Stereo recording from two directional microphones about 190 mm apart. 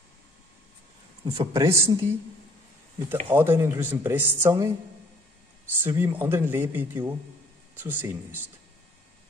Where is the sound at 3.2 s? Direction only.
10° right (ahead or behind).